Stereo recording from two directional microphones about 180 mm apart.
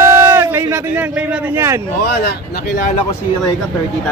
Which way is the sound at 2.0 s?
60° left (ahead or behind).